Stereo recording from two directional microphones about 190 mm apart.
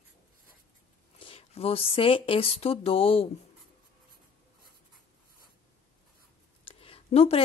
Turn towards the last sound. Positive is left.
turn(degrees=30)  # may be behind; listen again after turning